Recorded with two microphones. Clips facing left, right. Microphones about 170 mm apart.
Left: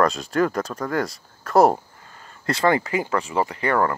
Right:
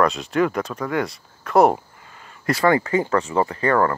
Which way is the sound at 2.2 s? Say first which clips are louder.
Right 1 dB; 35° left (ahead or behind).